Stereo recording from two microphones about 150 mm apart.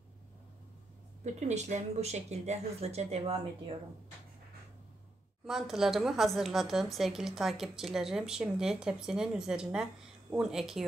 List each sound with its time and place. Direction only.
1.2 s speech: 50° right (ahead or behind)
5.5 s a woman's voice: centre (ahead or behind)